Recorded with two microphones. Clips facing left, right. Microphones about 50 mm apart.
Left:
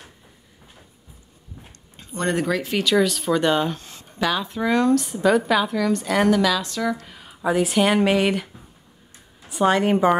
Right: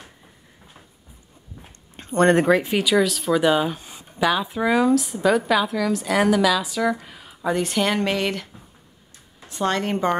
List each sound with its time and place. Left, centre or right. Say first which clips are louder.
2.0 s speech: right 7 dB; right
2.5 s speech: right 4 dB; right
2.8 s a woman's voice: even; centre
7.2 s speech: left 2 dB; centre
9.5 s speech: left 5 dB; centre